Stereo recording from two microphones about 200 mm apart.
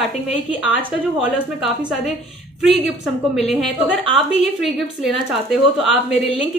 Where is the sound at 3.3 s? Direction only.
Centre (ahead or behind).